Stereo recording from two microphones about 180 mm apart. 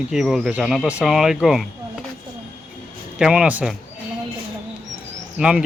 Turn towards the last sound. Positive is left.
turn(degrees=-5)  # may be behind; listen again after turning